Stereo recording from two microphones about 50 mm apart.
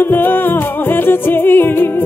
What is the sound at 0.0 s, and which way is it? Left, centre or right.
Music, left.